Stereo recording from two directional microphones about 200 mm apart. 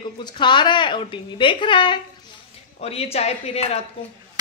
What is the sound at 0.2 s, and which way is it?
A woman's voice, 20° left (ahead or behind).